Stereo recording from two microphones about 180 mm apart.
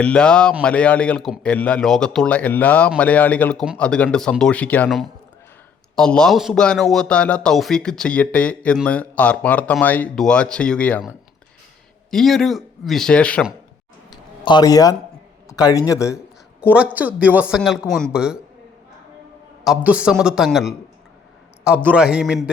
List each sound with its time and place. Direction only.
0.0 s a man's voice: 5° left (ahead or behind)
12.1 s a man's voice: centre (ahead or behind)
14.1 s a sound: 25° left (ahead or behind)
15.9 s a man's voice: 15° left (ahead or behind)
16.7 s a man's voice: 10° right (ahead or behind)
19.6 s a man's voice: 5° right (ahead or behind)
21.8 s a man's voice: 5° right (ahead or behind)